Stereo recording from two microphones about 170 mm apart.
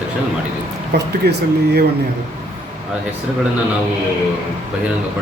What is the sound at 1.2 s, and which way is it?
Speech, 70° right (ahead or behind).